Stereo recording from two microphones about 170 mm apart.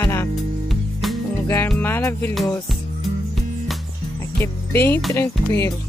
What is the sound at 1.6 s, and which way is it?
Music, 10° left (ahead or behind).